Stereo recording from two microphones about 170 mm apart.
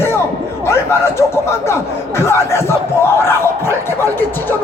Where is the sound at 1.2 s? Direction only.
15° left (ahead or behind).